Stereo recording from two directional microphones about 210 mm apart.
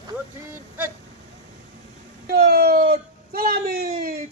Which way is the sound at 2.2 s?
45° right (ahead or behind).